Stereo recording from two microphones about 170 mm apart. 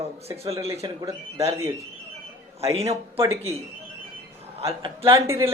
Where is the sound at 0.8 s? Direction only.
25° right (ahead or behind).